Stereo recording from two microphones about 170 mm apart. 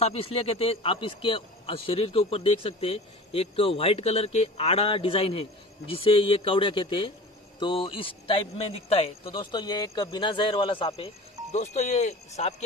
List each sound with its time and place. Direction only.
0.0 s a man's voice: 35° left (ahead or behind)